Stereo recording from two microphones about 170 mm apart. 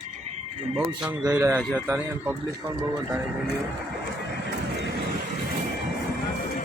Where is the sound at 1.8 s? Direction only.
10° right (ahead or behind).